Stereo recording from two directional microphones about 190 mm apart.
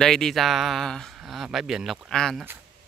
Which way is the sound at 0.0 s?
Centre (ahead or behind).